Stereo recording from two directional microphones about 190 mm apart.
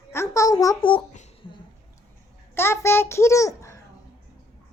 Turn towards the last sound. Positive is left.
turn(degrees=15)  # may be behind; listen again after turning